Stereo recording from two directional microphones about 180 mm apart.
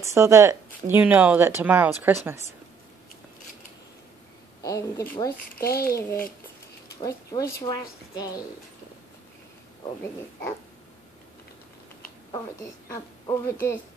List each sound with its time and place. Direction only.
0.0 s speech: 15° right (ahead or behind)
4.6 s speech: 20° left (ahead or behind)
5.6 s a child's voice: 55° left (ahead or behind)
7.0 s speech: 20° left (ahead or behind)
12.8 s speech: 20° left (ahead or behind)